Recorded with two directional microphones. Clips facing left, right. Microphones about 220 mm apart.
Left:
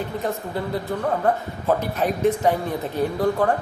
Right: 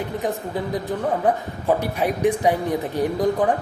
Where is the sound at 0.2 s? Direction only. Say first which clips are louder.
Right 1 dB; 15° right (ahead or behind).